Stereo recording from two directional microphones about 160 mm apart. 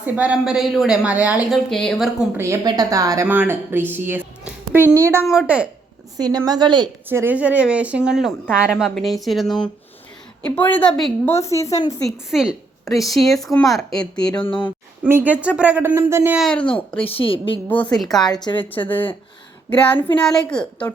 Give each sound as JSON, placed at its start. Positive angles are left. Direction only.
{"t": 0.0, "sound": "speech", "side_deg": -10}
{"t": 1.7, "sound": "speech", "side_deg": 5}
{"t": 2.3, "sound": "speech", "side_deg": -15}
{"t": 6.1, "sound": "a woman's voice", "side_deg": -25}
{"t": 7.1, "sound": "a woman's voice", "side_deg": -10}
{"t": 11.3, "sound": "a woman's voice", "side_deg": 20}
{"t": 12.0, "sound": "speech", "side_deg": -5}
{"t": 15.0, "sound": "speech", "side_deg": -10}
{"t": 16.4, "sound": "speech", "side_deg": 5}
{"t": 17.0, "sound": "a woman's voice", "side_deg": 35}
{"t": 17.7, "sound": "speech", "side_deg": 10}
{"t": 18.5, "sound": "a woman's voice", "side_deg": 25}
{"t": 18.9, "sound": "a woman's voice", "side_deg": 10}